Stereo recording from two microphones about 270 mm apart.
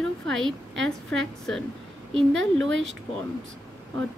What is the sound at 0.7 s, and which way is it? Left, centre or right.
Speech, right.